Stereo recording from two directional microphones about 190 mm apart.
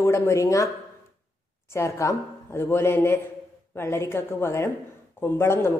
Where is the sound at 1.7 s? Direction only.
15° left (ahead or behind).